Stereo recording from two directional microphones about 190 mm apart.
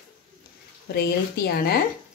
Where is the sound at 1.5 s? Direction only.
55° left (ahead or behind).